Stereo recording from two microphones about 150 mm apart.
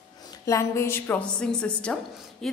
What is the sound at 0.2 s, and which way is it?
A woman's voice, 25° left (ahead or behind).